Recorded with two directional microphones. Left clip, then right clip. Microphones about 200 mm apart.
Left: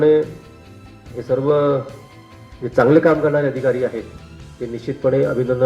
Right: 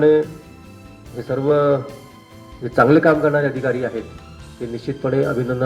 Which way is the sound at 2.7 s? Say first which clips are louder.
Even; 35° right (ahead or behind).